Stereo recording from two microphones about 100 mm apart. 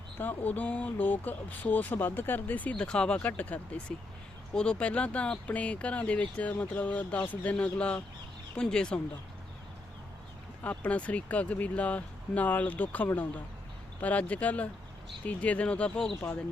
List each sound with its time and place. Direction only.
0.2 s speech: 15° left (ahead or behind)
10.6 s speech: 15° left (ahead or behind)